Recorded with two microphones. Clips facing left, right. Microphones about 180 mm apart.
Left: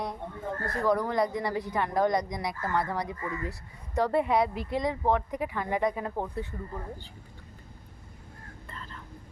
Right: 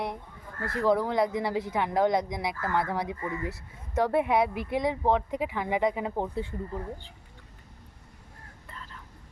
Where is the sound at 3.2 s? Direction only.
20° right (ahead or behind).